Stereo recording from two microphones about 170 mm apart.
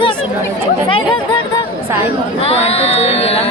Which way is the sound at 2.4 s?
35° left (ahead or behind).